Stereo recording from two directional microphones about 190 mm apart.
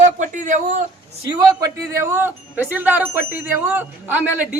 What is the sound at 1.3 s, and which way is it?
Speech, 15° right (ahead or behind).